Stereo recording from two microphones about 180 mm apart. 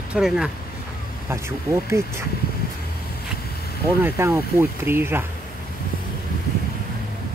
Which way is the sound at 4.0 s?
10° right (ahead or behind).